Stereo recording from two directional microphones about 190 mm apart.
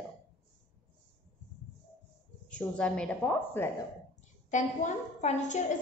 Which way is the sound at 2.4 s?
5° left (ahead or behind).